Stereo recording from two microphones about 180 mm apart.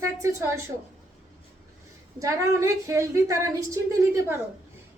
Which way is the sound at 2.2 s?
15° right (ahead or behind).